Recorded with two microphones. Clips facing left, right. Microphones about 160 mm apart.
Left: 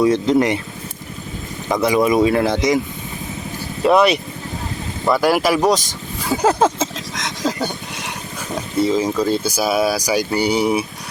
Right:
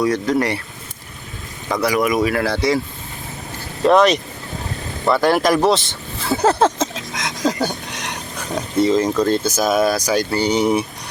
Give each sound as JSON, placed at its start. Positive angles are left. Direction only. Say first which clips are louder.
{"t": 0.0, "sound": "speech", "louder": "left 3 dB", "side_deg": 25}
{"t": 1.7, "sound": "speech", "louder": "left 2 dB", "side_deg": 20}
{"t": 3.8, "sound": "speech", "louder": "right 1 dB", "side_deg": 10}